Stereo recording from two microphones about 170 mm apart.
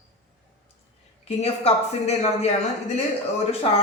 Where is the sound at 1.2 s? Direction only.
40° left (ahead or behind).